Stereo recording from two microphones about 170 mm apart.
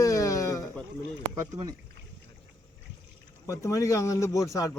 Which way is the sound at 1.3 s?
20° right (ahead or behind).